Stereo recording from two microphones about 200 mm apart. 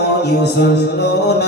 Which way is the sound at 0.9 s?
55° left (ahead or behind).